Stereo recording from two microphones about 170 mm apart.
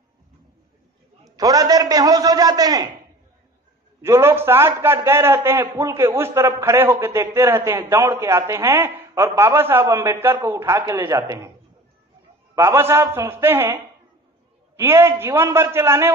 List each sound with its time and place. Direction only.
1.2 s a man's voice: 20° right (ahead or behind)
4.0 s a man's voice: 15° right (ahead or behind)
12.5 s a man's voice: 15° right (ahead or behind)
14.8 s a man's voice: 15° right (ahead or behind)